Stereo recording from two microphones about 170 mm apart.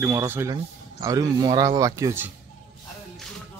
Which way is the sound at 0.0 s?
15° right (ahead or behind).